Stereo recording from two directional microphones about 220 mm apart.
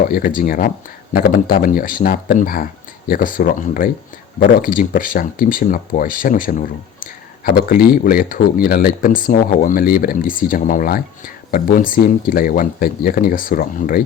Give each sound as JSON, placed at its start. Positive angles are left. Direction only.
{"t": 0.1, "sound": "speech", "side_deg": 40}